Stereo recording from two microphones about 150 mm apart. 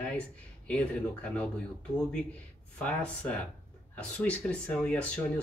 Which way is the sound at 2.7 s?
5° left (ahead or behind).